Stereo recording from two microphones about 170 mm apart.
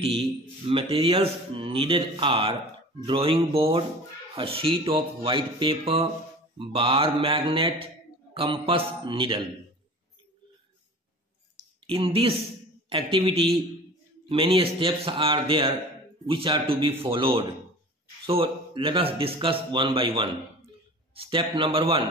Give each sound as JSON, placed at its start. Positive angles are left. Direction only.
{"t": 0.0, "sound": "speech", "side_deg": -35}
{"t": 11.8, "sound": "a man's voice", "side_deg": -30}